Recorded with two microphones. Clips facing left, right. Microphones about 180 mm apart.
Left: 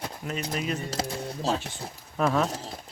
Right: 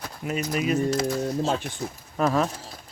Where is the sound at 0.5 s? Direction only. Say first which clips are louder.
Right 6 dB; 5° right (ahead or behind).